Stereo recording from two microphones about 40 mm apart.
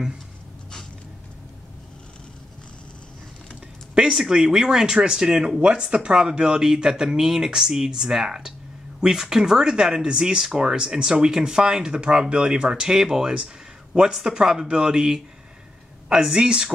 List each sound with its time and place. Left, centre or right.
4.1 s speech: centre